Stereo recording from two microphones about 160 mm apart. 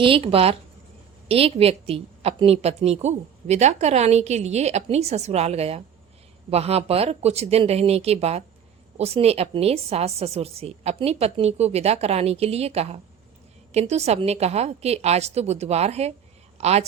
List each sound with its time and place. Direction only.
0.0 s a woman's voice: 35° right (ahead or behind)